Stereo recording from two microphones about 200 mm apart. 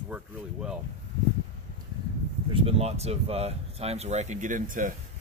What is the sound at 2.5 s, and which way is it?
Speech, 30° right (ahead or behind).